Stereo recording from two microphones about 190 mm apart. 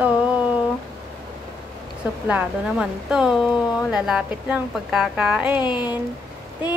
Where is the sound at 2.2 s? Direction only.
5° right (ahead or behind).